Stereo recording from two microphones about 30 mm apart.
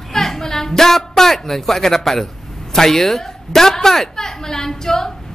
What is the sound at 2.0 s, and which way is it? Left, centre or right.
A woman's voice, centre.